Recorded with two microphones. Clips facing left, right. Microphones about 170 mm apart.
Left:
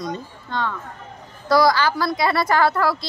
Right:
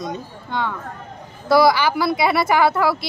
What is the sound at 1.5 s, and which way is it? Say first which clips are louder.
Speech: right 2 dB; 5° right (ahead or behind).